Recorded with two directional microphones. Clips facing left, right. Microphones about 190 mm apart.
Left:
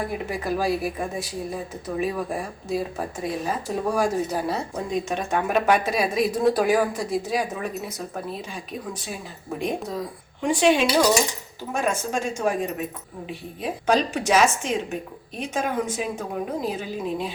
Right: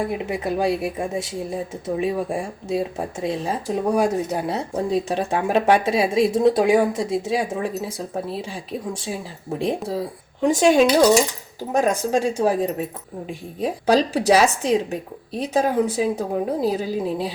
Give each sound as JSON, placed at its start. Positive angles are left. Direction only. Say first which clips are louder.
{"t": 0.0, "sound": "a woman's voice", "louder": "right 4 dB", "side_deg": -25}
{"t": 4.9, "sound": "a woman's voice", "louder": "right 3 dB", "side_deg": -35}